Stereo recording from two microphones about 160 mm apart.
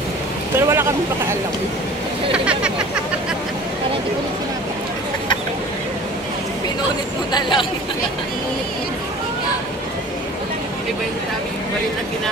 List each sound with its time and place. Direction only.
0.6 s speech: 15° right (ahead or behind)
7.3 s speech: 30° left (ahead or behind)